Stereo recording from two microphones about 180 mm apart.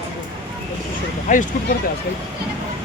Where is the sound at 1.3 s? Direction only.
45° left (ahead or behind).